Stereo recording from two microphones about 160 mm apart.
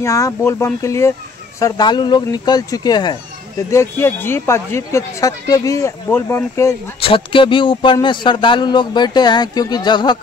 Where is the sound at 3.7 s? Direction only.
15° left (ahead or behind).